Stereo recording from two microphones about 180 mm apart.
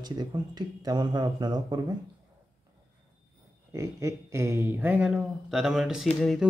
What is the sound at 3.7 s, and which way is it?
Speech, 15° right (ahead or behind).